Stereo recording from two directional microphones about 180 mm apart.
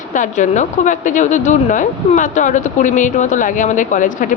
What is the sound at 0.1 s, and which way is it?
A woman's voice, 45° left (ahead or behind).